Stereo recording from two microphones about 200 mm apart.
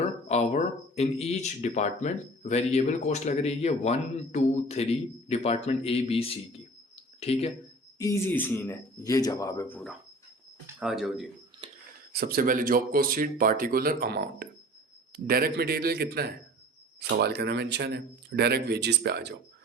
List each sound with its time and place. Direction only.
0.3 s speech: 35° left (ahead or behind)
7.9 s a man's voice: 15° left (ahead or behind)
10.8 s speech: centre (ahead or behind)
12.1 s a man's voice: 50° right (ahead or behind)